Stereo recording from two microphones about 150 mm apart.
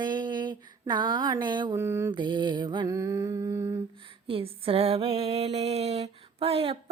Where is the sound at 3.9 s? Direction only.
35° right (ahead or behind).